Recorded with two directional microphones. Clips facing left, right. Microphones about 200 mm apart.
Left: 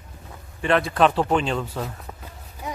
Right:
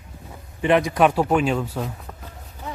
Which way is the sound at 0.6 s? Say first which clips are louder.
Right 2 dB; 15° right (ahead or behind).